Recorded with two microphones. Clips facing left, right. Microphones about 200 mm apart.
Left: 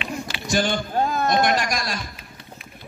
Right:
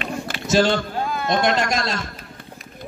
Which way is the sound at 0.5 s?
65° right (ahead or behind).